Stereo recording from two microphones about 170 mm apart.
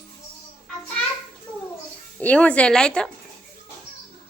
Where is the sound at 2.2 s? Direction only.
10° left (ahead or behind).